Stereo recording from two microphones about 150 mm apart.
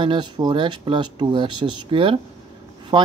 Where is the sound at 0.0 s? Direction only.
30° right (ahead or behind).